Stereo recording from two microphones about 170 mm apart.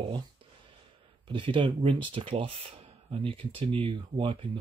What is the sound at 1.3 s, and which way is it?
Speech, 30° right (ahead or behind).